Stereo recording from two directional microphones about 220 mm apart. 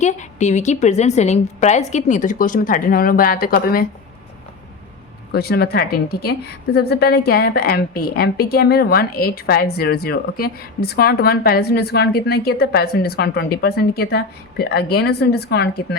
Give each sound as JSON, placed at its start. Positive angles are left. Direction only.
{"t": 0.0, "sound": "a woman's voice", "side_deg": 30}
{"t": 5.3, "sound": "a woman's voice", "side_deg": 45}